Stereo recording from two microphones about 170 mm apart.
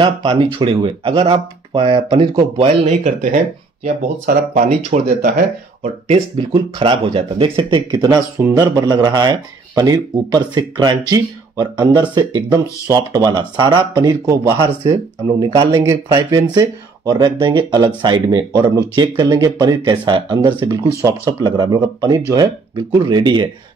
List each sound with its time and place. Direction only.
0.0 s speech: 30° right (ahead or behind); by 5.0 s 50° right (ahead or behind)
6.0 s speech: 40° right (ahead or behind)
15.7 s speech: 20° right (ahead or behind)